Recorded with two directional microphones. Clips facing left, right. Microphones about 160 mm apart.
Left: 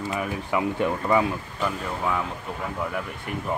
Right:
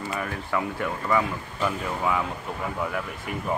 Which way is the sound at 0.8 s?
20° left (ahead or behind).